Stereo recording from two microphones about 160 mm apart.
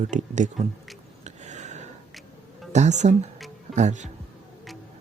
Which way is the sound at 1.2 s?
45° right (ahead or behind).